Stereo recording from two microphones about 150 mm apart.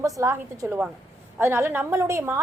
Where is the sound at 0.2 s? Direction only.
20° right (ahead or behind).